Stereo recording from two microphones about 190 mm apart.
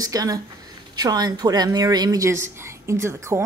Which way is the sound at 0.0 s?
20° right (ahead or behind).